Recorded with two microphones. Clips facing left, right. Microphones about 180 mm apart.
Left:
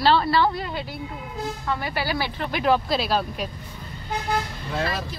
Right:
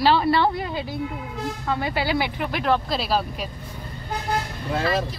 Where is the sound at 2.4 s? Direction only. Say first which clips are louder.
Left 4 dB; centre (ahead or behind).